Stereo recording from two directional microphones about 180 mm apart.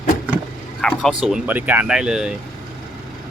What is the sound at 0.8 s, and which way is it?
Speech, 5° left (ahead or behind).